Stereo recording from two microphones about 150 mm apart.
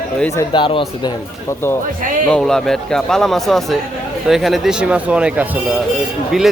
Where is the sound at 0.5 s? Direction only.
35° left (ahead or behind).